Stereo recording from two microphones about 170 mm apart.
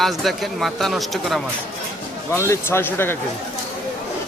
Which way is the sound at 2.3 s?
15° left (ahead or behind).